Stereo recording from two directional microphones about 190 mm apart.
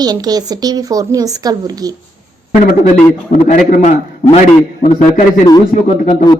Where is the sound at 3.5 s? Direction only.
40° left (ahead or behind).